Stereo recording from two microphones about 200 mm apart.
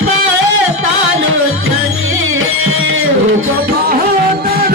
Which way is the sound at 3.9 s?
50° right (ahead or behind).